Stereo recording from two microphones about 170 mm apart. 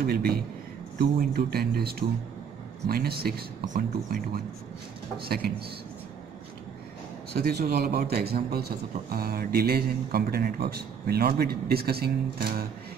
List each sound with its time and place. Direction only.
0.0 s a man's voice: 65° right (ahead or behind)
7.3 s a man's voice: 65° right (ahead or behind)